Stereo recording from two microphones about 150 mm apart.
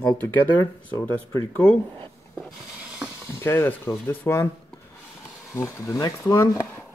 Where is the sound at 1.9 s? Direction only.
35° right (ahead or behind).